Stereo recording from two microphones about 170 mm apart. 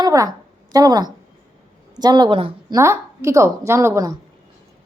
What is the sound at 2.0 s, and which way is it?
Speech, 25° right (ahead or behind).